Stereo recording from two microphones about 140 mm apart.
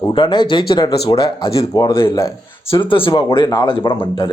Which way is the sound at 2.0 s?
20° left (ahead or behind).